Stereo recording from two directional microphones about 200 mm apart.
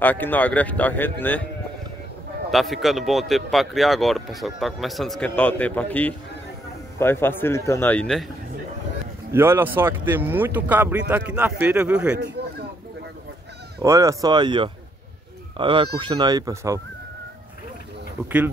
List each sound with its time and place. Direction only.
0.0 s speech: 10° left (ahead or behind)
2.5 s a man's voice: centre (ahead or behind)
9.3 s speech: 10° right (ahead or behind)
13.7 s speech: 15° right (ahead or behind)